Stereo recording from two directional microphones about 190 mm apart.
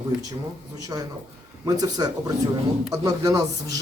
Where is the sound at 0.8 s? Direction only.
20° right (ahead or behind).